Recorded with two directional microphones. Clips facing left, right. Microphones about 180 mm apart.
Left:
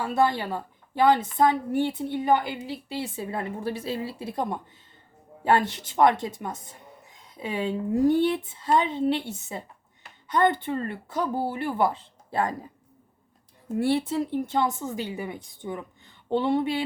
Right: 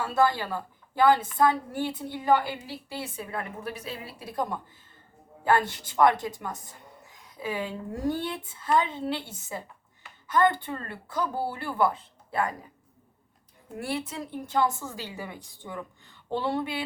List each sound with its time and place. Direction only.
0.0 s a woman's voice: 20° left (ahead or behind)
13.7 s a woman's voice: 30° left (ahead or behind)